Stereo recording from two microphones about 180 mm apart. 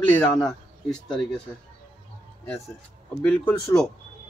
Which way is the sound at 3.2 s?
10° left (ahead or behind).